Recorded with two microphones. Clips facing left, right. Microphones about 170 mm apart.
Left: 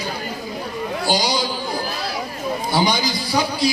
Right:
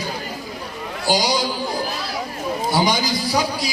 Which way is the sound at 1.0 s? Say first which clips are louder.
Right 2 dB; 45° right (ahead or behind).